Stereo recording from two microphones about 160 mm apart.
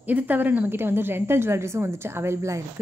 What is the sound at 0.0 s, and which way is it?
A woman's voice, 10° right (ahead or behind).